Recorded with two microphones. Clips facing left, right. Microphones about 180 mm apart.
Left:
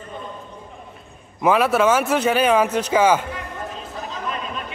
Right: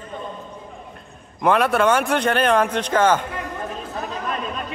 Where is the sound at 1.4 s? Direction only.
5° left (ahead or behind).